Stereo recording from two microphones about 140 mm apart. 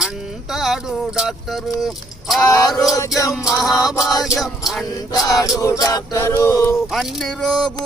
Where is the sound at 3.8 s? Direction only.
Centre (ahead or behind).